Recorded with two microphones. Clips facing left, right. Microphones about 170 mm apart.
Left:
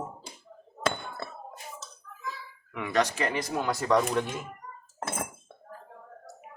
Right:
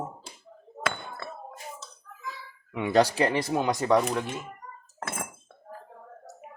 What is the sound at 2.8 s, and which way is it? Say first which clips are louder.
Speech: right 5 dB; 30° right (ahead or behind).